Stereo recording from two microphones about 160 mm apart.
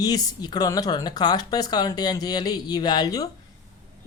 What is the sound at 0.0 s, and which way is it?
A woman's voice, 25° left (ahead or behind).